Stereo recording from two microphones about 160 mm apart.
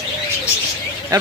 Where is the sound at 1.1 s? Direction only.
25° right (ahead or behind).